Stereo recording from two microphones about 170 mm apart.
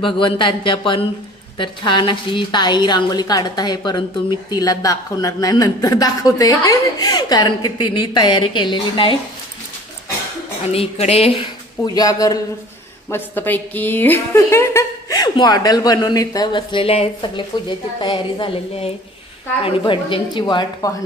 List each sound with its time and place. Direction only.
0.0 s a woman's voice: 30° left (ahead or behind)
10.7 s a woman's voice: 35° left (ahead or behind)